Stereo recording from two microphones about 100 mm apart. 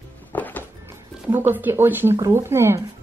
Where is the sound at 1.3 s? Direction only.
20° right (ahead or behind).